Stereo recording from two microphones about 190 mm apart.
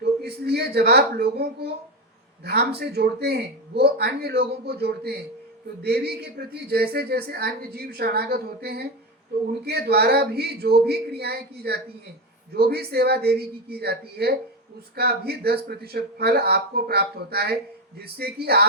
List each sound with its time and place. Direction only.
0.0 s a woman's voice: 60° right (ahead or behind)